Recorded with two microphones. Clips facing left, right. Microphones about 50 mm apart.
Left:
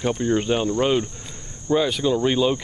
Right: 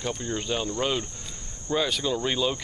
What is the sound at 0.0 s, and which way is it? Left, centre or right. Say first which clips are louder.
Speech: left 9 dB; left.